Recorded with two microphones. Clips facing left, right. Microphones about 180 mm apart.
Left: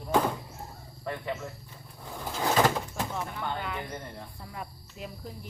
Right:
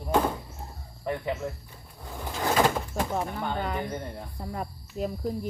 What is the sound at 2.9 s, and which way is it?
Speech, 45° right (ahead or behind).